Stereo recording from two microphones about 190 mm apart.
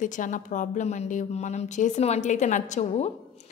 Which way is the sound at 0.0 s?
40° left (ahead or behind).